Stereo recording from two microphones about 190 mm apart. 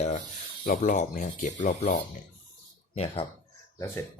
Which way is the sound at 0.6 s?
45° left (ahead or behind).